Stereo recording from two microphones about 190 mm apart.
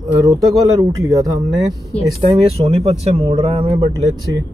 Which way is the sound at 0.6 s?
15° right (ahead or behind).